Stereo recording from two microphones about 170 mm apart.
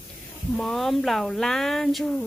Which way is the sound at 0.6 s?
Centre (ahead or behind).